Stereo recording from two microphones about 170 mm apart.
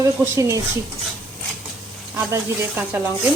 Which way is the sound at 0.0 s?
20° right (ahead or behind).